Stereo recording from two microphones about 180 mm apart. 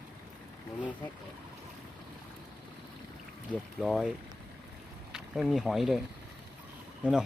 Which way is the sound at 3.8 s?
Centre (ahead or behind).